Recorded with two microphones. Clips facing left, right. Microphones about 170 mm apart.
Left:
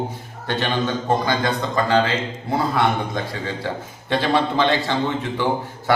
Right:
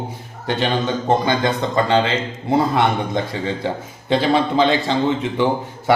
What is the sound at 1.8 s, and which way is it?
Speech, 25° right (ahead or behind).